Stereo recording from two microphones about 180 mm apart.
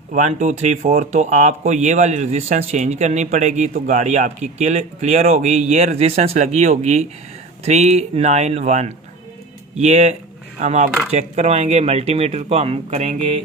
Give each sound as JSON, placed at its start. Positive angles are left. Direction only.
{"t": 0.1, "sound": "speech", "side_deg": -40}